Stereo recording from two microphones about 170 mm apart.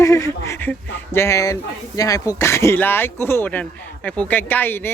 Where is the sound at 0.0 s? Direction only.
20° left (ahead or behind).